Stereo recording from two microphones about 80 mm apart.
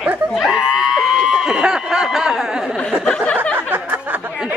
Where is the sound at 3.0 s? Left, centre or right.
Centre.